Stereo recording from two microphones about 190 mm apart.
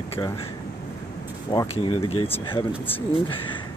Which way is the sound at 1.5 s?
20° left (ahead or behind).